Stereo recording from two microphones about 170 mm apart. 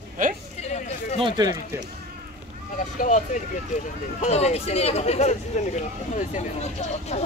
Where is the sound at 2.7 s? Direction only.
50° left (ahead or behind).